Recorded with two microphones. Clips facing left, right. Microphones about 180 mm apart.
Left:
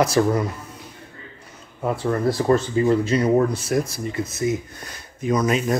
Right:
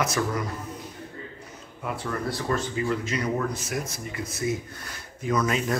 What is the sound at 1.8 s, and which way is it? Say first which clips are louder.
Speech: left 8 dB; 35° left (ahead or behind).